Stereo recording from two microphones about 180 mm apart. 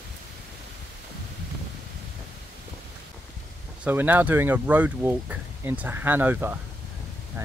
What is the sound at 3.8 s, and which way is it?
Speech, 10° right (ahead or behind).